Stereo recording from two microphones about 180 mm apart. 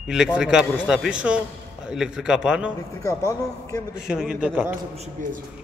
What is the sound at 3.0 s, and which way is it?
Speech, 15° left (ahead or behind).